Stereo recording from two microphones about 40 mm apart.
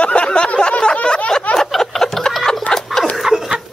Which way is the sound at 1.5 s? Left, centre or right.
Centre.